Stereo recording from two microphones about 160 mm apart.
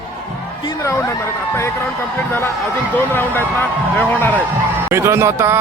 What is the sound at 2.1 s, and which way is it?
Speech, 15° left (ahead or behind).